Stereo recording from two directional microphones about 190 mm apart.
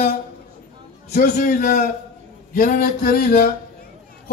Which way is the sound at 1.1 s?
45° left (ahead or behind).